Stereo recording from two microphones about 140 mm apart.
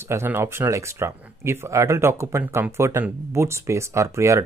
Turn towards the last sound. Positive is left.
turn(degrees=-20)  # may be behind; listen again after turning